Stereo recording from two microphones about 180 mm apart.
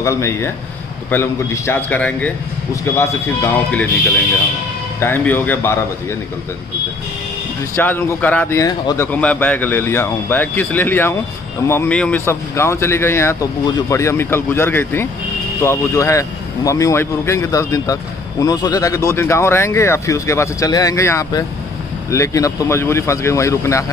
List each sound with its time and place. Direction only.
0.0 s a man's voice: 15° left (ahead or behind)
5.0 s a man's voice: 10° left (ahead or behind)
7.7 s a man's voice: 10° left (ahead or behind)